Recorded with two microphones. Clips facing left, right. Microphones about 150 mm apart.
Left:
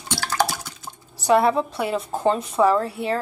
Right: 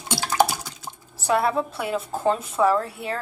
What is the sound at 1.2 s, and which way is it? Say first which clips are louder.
Speech: left 4 dB; centre (ahead or behind).